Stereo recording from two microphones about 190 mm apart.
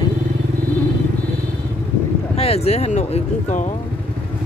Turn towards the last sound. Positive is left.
turn(degrees=35)  # may be behind; listen again after turning